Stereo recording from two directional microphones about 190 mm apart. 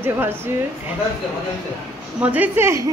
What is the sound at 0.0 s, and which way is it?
Speech, 10° right (ahead or behind).